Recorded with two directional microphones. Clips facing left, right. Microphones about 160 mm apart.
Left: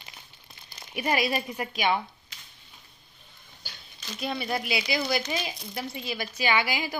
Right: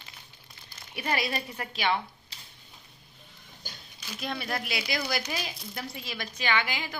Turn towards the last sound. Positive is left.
turn(degrees=10)  # may be behind; listen again after turning